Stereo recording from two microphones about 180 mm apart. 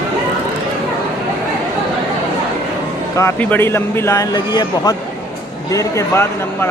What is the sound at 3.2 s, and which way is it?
Speech, 10° left (ahead or behind).